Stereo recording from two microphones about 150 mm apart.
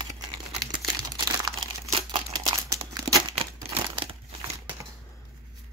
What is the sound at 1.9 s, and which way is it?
Crumpling, 35° right (ahead or behind).